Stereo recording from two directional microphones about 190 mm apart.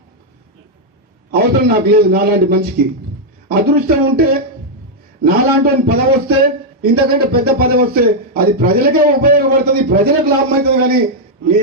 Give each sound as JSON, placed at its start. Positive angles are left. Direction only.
{"t": 1.3, "sound": "a man's voice", "side_deg": -55}